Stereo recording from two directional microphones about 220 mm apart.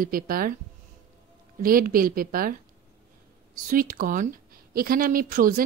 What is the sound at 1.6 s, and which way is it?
Speech, 40° right (ahead or behind).